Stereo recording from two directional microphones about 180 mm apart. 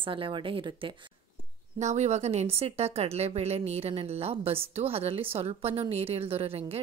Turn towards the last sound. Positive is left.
turn(degrees=-35)  # may be behind; listen again after turning